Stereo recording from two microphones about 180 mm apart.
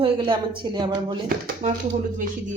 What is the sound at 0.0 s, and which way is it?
Speech, 30° right (ahead or behind).